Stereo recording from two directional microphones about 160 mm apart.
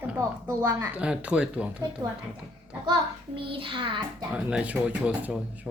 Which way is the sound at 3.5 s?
30° right (ahead or behind).